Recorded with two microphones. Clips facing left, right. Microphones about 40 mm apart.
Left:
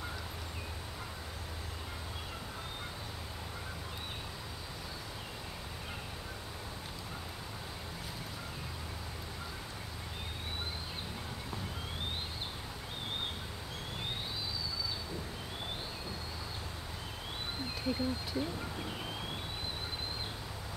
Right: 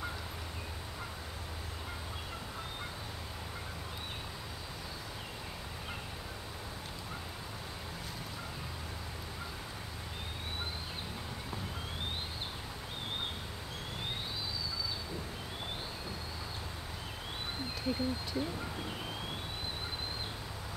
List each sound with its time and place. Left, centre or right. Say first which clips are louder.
17.8 s speech: even; centre